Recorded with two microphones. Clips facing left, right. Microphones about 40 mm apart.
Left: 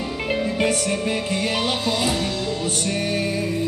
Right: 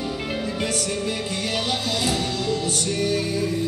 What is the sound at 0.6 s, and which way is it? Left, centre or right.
Music, left.